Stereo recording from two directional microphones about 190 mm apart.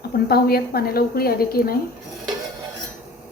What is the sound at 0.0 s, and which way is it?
A woman's voice, 55° left (ahead or behind).